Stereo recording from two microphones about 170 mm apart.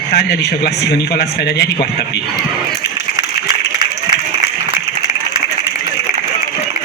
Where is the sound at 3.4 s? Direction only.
25° right (ahead or behind).